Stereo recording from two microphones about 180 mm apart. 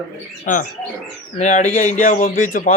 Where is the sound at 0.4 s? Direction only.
45° left (ahead or behind).